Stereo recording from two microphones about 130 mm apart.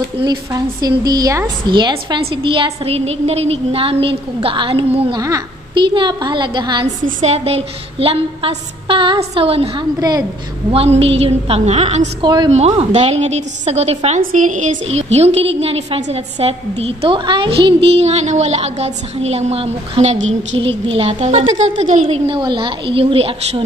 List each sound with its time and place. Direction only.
0.2 s a woman's voice: 30° right (ahead or behind); by 5.2 s 45° right (ahead or behind)
5.2 s a child's voice: 25° right (ahead or behind)
5.9 s a woman's voice: 35° right (ahead or behind)
7.1 s a woman's voice: 65° right (ahead or behind)
9.9 s a woman's voice: 30° right (ahead or behind)
10.7 s a woman's voice: 50° right (ahead or behind)
12.2 s a woman's voice: 35° right (ahead or behind)
12.4 s a woman's voice: 55° right (ahead or behind)
14.2 s a woman's voice: 80° right
22.2 s a woman's voice: 40° right (ahead or behind)